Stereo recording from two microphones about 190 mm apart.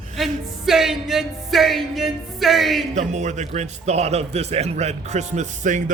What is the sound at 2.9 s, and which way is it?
A man's voice, 40° right (ahead or behind).